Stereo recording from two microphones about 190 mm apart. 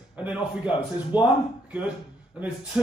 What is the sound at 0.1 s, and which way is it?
A man's voice, 5° right (ahead or behind).